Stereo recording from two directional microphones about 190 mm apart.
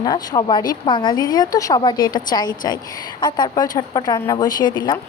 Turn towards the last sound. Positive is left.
turn(degrees=20)  # may be behind; listen again after turning